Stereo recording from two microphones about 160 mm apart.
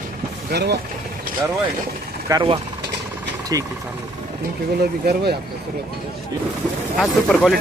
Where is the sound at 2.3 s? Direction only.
30° right (ahead or behind).